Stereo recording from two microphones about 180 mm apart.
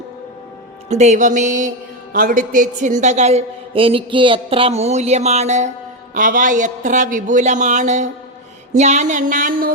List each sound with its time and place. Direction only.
0.9 s a woman's voice: 40° right (ahead or behind)